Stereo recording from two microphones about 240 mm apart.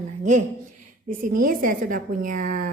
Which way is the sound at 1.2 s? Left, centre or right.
Right.